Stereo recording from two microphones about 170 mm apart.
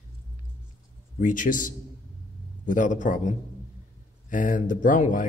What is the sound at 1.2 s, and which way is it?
A man's voice, 50° left (ahead or behind).